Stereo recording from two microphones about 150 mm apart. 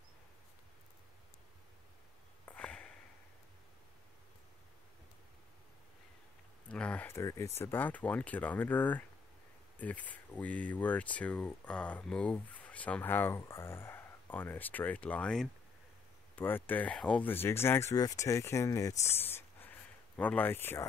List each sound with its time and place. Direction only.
2.4 s sniff: 10° left (ahead or behind)
6.7 s speech: 5° left (ahead or behind)